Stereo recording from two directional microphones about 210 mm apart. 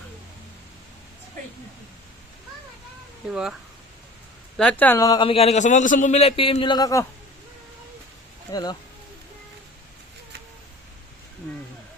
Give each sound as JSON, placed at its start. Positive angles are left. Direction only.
{"t": 3.2, "sound": "speech", "side_deg": -5}
{"t": 4.5, "sound": "a man's voice", "side_deg": 5}